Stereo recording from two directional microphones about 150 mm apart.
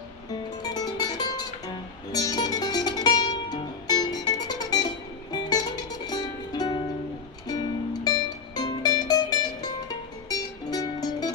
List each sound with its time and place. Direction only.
0.6 s music: 25° left (ahead or behind)